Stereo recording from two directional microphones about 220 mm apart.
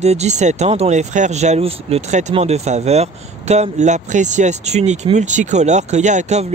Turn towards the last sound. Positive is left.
turn(degrees=-30)  # may be behind; listen again after turning